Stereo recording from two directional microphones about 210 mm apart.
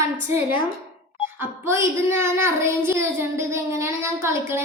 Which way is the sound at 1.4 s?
10° right (ahead or behind).